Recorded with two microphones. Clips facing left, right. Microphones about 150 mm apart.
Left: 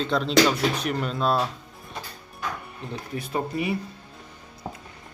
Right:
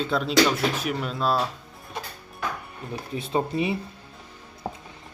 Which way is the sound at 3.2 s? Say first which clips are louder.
Right 3 dB; 25° right (ahead or behind).